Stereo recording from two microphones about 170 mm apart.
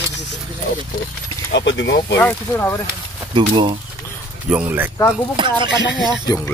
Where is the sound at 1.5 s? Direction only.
90° left.